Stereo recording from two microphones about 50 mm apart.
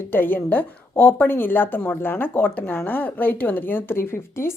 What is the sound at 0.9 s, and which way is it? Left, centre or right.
Speech, left.